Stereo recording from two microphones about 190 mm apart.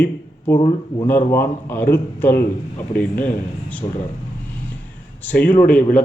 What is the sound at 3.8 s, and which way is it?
Speech, 15° left (ahead or behind).